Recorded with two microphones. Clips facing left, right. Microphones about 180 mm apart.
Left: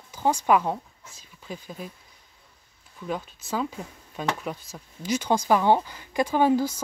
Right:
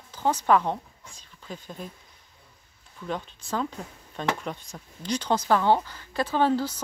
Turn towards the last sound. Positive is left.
turn(degrees=10)  # may be behind; listen again after turning